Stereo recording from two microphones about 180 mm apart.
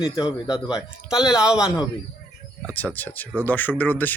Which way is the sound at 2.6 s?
10° left (ahead or behind).